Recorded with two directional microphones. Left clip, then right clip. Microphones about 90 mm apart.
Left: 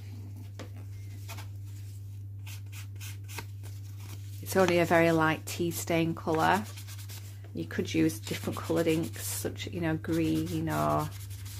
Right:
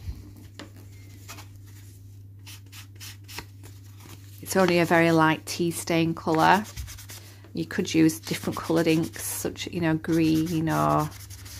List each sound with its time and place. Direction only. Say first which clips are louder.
2.4 s rub: right 3 dB; 5° right (ahead or behind)
4.5 s speech: right 3 dB; 25° right (ahead or behind)
6.6 s rub: right 5 dB; 20° right (ahead or behind)
7.5 s speech: right 6 dB; 40° right (ahead or behind)